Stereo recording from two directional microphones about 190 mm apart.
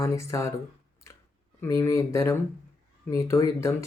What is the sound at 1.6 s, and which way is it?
Speech, 15° left (ahead or behind).